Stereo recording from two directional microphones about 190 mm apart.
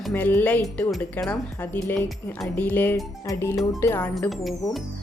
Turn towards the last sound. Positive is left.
turn(degrees=0)  # may be behind; listen again after turning